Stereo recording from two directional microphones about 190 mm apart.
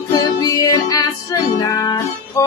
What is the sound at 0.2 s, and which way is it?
Music, 20° left (ahead or behind).